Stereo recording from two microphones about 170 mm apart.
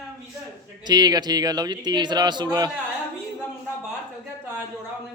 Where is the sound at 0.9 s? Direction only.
25° right (ahead or behind).